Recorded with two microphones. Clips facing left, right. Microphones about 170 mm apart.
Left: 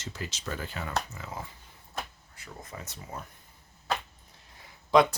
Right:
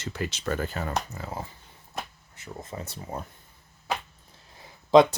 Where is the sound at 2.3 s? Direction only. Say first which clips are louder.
Right 6 dB; 25° right (ahead or behind).